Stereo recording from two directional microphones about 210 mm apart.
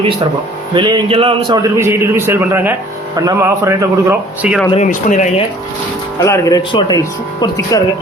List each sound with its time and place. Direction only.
0.7 s a man's voice: 20° right (ahead or behind)
4.7 s speech: 35° left (ahead or behind)
6.1 s speech: 15° left (ahead or behind)